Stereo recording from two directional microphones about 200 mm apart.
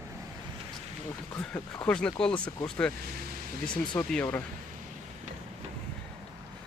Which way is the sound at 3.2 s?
45° right (ahead or behind).